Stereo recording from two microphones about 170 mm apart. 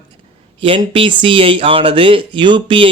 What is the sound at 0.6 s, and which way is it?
Speech, 30° right (ahead or behind).